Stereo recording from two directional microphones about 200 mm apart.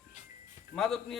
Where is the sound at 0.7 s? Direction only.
Centre (ahead or behind).